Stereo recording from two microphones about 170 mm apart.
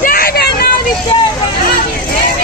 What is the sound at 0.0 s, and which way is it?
Hubbub, 60° left (ahead or behind).